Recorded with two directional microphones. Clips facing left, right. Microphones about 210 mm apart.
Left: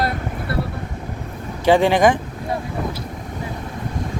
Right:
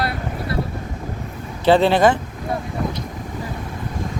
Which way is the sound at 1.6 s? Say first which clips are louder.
Even; 15° left (ahead or behind).